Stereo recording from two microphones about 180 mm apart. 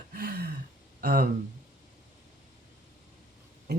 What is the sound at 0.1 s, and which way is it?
Gasp, 55° right (ahead or behind).